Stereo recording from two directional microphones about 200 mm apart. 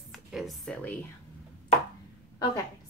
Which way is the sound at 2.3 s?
20° left (ahead or behind).